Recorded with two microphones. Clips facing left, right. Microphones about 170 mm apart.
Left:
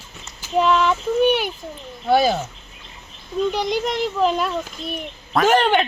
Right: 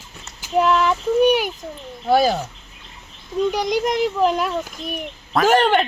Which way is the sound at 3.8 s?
15° right (ahead or behind).